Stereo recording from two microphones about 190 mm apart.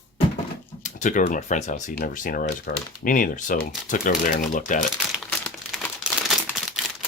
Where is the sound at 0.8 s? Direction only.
40° left (ahead or behind).